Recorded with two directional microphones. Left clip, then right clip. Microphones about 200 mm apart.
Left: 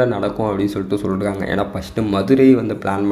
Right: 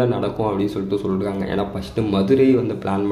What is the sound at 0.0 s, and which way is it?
Speech, 20° left (ahead or behind).